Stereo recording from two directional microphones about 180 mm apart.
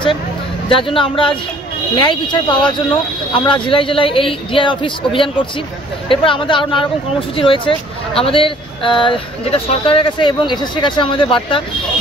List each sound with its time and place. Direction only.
0.7 s speech: 30° left (ahead or behind)